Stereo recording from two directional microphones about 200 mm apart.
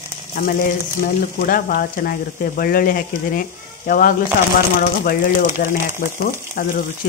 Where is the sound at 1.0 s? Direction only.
45° left (ahead or behind).